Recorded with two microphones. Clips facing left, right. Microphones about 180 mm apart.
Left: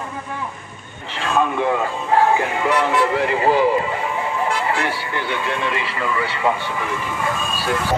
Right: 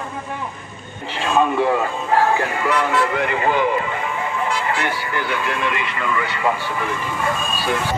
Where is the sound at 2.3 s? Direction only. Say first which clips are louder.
Left 1 dB; 20° left (ahead or behind).